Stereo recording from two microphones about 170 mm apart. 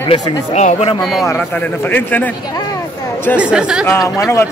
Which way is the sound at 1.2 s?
10° left (ahead or behind).